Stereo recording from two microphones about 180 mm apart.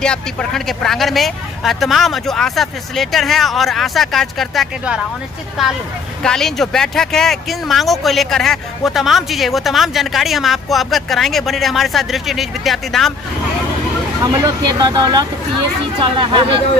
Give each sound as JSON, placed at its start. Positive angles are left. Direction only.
{"t": 0.0, "sound": "speech", "side_deg": 5}
{"t": 14.2, "sound": "speech", "side_deg": -20}